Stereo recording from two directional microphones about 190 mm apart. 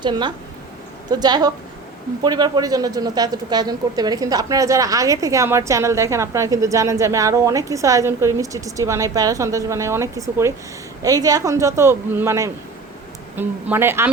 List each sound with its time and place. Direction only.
0.0 s speech: 25° right (ahead or behind)